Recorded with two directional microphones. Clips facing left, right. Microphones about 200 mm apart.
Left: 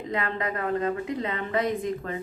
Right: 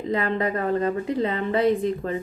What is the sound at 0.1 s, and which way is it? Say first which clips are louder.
A woman's voice: right 6 dB; 35° right (ahead or behind).